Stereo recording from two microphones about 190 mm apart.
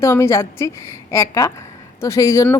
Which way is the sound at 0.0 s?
15° left (ahead or behind).